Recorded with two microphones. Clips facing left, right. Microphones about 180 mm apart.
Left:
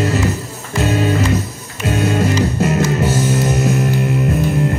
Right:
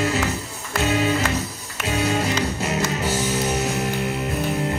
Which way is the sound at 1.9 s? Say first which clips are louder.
Left 6 dB; 45° left (ahead or behind).